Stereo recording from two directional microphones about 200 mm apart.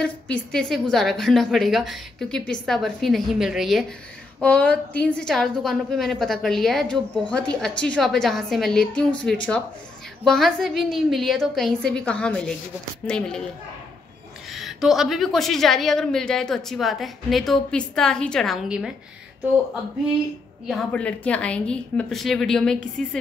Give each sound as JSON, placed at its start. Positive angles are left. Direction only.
{"t": 0.0, "sound": "a woman's voice", "side_deg": 5}
{"t": 14.5, "sound": "a woman's voice", "side_deg": 0}
{"t": 20.6, "sound": "a woman's voice", "side_deg": 5}